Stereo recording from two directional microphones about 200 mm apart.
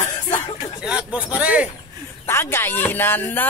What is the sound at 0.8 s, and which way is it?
Speech, 5° right (ahead or behind).